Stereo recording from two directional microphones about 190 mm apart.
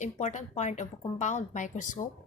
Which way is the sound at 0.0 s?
40° left (ahead or behind).